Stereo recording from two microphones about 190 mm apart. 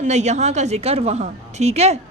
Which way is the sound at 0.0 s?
35° right (ahead or behind).